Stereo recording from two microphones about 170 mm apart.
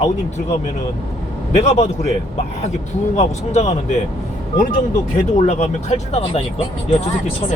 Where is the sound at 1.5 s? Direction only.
40° left (ahead or behind).